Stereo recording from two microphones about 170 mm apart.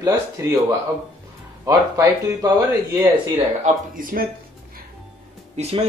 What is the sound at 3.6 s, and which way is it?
Speech, 55° right (ahead or behind).